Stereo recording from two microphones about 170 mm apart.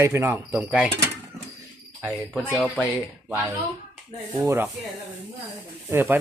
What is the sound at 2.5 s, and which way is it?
Speech, centre (ahead or behind).